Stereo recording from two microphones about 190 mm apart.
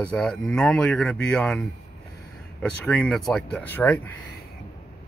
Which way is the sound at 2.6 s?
5° left (ahead or behind).